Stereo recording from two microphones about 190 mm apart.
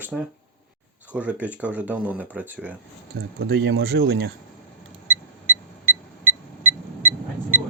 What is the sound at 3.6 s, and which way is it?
Speech, 65° right (ahead or behind).